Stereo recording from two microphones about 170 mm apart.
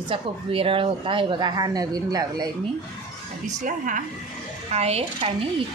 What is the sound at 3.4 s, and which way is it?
Speech, 50° right (ahead or behind).